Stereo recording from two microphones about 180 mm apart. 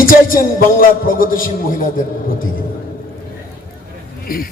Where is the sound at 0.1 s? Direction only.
50° left (ahead or behind).